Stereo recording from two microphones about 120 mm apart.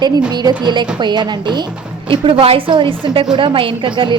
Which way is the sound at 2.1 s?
50° right (ahead or behind).